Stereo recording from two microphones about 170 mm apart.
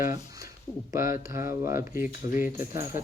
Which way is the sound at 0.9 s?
15° right (ahead or behind).